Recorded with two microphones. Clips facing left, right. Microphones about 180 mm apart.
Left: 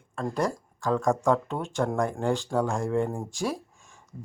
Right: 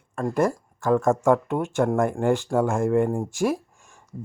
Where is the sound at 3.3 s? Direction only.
15° right (ahead or behind).